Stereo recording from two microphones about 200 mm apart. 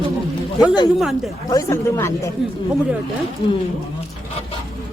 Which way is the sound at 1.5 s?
15° left (ahead or behind).